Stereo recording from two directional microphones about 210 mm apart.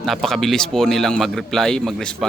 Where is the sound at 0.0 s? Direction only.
Centre (ahead or behind).